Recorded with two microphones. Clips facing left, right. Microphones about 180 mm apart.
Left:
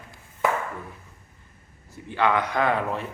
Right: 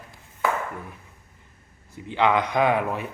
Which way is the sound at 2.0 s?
20° right (ahead or behind).